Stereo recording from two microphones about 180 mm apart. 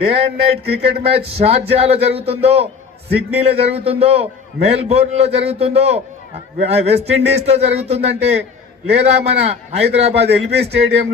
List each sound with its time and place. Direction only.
0.0 s a man's voice: 30° right (ahead or behind)